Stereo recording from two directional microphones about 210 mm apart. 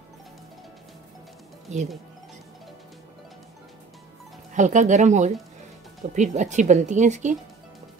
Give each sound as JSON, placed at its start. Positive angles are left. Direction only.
{"t": 1.7, "sound": "speech", "side_deg": -35}
{"t": 4.6, "sound": "speech", "side_deg": -35}